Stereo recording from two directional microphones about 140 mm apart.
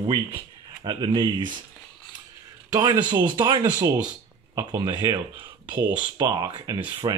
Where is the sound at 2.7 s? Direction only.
30° right (ahead or behind).